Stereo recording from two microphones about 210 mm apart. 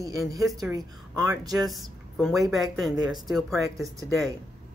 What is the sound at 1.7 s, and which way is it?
Speech, centre (ahead or behind).